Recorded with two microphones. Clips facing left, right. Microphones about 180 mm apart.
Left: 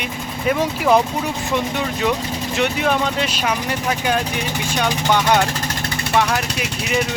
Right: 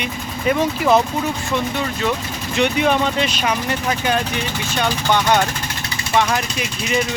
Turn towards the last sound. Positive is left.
turn(degrees=10)  # may be behind; listen again after turning